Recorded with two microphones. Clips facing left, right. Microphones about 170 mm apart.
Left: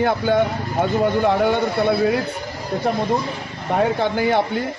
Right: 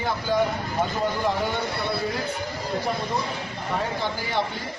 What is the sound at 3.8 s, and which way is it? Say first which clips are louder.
Speech: left 12 dB; 55° left (ahead or behind).